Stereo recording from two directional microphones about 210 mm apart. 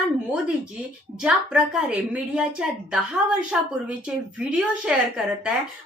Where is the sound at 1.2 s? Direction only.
5° right (ahead or behind).